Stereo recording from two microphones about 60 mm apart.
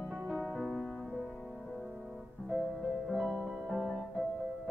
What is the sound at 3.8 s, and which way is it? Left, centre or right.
Music, centre.